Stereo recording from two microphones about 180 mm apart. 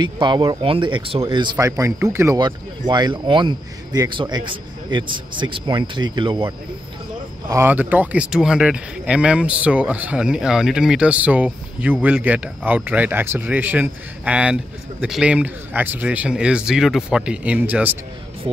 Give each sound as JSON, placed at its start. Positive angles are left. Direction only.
{"t": 0.0, "sound": "a man's voice", "side_deg": -25}
{"t": 7.4, "sound": "speech", "side_deg": -15}